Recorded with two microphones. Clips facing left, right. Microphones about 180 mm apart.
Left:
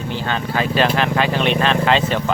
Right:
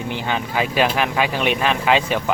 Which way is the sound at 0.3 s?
15° right (ahead or behind).